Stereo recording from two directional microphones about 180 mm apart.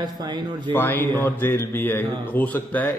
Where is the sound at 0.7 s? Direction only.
10° left (ahead or behind).